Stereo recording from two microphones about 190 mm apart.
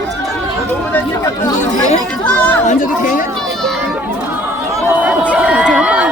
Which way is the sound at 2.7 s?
45° left (ahead or behind).